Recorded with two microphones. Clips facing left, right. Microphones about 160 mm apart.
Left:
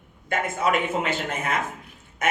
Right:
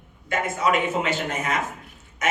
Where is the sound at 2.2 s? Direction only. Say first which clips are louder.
Even; 55° left (ahead or behind).